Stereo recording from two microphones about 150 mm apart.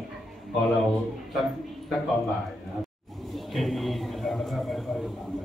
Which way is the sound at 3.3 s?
Centre (ahead or behind).